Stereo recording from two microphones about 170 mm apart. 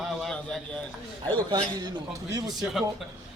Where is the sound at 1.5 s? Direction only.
25° right (ahead or behind).